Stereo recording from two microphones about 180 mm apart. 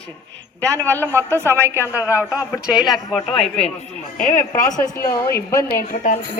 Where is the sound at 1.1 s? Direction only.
15° right (ahead or behind).